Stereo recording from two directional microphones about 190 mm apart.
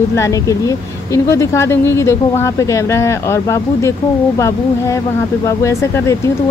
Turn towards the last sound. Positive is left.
turn(degrees=15)  # may be behind; listen again after turning